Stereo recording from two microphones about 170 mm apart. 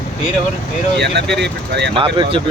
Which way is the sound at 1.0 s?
80° right.